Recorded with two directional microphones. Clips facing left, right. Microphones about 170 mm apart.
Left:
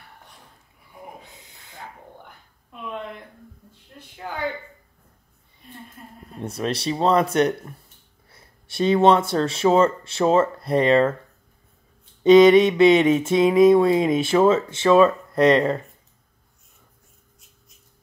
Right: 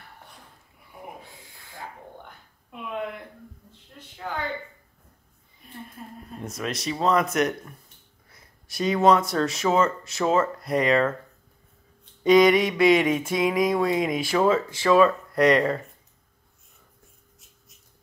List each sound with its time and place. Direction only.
1.2 s a sound: 20° left (ahead or behind)
6.4 s speech: 30° left (ahead or behind)
12.2 s mantra: 25° left (ahead or behind)